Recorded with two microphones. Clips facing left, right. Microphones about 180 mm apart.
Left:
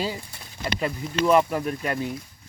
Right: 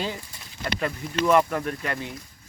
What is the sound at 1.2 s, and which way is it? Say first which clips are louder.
Speech: left 1 dB; 10° left (ahead or behind).